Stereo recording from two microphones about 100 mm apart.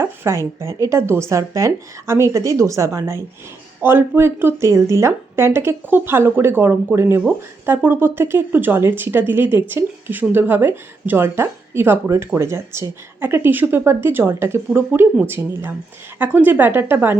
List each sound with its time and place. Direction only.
0.2 s a woman's voice: 25° right (ahead or behind)